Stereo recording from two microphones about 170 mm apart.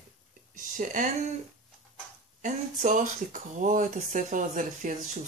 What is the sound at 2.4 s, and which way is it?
Speech, 50° right (ahead or behind).